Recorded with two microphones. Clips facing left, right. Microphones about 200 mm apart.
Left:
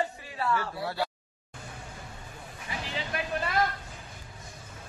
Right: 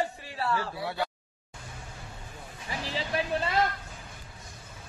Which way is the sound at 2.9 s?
30° right (ahead or behind).